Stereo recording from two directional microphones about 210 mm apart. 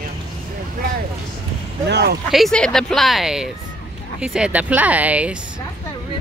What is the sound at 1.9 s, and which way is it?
Speech, 50° right (ahead or behind).